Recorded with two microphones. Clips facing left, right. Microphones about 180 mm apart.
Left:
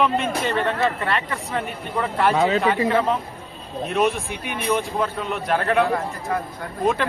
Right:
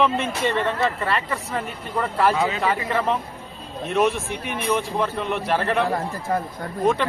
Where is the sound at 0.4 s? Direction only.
Centre (ahead or behind).